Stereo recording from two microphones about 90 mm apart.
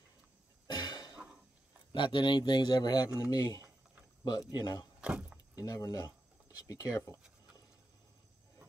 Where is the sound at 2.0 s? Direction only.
60° left (ahead or behind).